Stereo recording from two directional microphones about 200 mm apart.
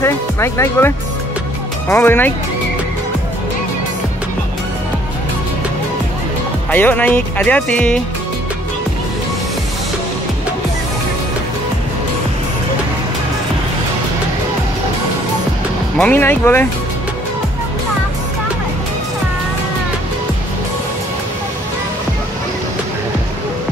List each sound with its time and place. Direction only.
0.0 s speech: 15° left (ahead or behind)
6.7 s speech: 10° left (ahead or behind)
16.0 s speech: 10° left (ahead or behind)